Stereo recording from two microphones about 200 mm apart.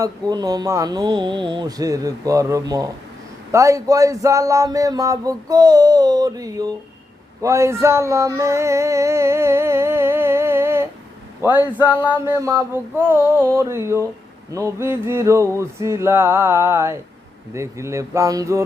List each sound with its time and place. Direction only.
0.0 s speech: 20° right (ahead or behind)
7.4 s a sound: 15° right (ahead or behind)
11.4 s speech: 10° right (ahead or behind)